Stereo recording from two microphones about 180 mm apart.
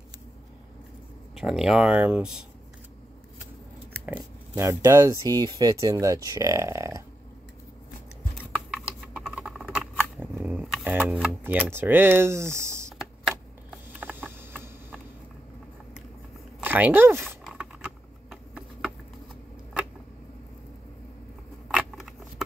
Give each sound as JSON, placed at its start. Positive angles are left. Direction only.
{"t": 1.4, "sound": "speech", "side_deg": 0}
{"t": 4.0, "sound": "speech", "side_deg": -10}
{"t": 9.0, "sound": "patter", "side_deg": -5}
{"t": 10.2, "sound": "a sound", "side_deg": -10}
{"t": 10.7, "sound": "camera", "side_deg": -10}
{"t": 14.5, "sound": "a sound", "side_deg": -10}
{"t": 16.6, "sound": "speech", "side_deg": -10}
{"t": 17.5, "sound": "a sound", "side_deg": -5}
{"t": 21.6, "sound": "scissors", "side_deg": 0}